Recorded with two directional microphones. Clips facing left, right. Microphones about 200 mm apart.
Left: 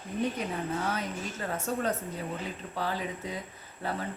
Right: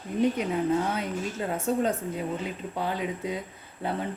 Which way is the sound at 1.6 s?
20° right (ahead or behind).